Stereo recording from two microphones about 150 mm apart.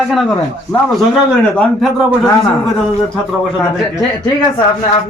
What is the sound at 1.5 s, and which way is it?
Speech, centre (ahead or behind).